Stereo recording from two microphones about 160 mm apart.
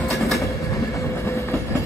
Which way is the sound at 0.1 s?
Centre (ahead or behind).